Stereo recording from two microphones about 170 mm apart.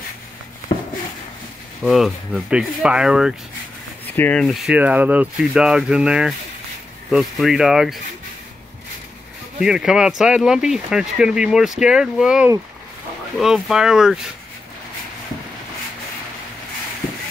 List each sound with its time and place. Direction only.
0.7 s a sound: 30° left (ahead or behind)
1.8 s speech: centre (ahead or behind)
4.0 s speech: 10° left (ahead or behind)
9.6 s speech: 5° right (ahead or behind)